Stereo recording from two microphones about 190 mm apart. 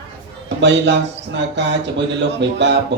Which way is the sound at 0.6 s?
65° right (ahead or behind).